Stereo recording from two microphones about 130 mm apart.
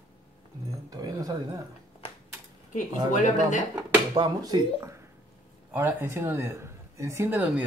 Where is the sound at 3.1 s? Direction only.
70° left (ahead or behind).